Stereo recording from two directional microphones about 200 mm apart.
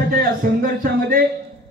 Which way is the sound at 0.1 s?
45° right (ahead or behind).